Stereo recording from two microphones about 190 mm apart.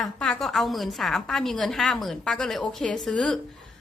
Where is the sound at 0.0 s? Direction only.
5° left (ahead or behind).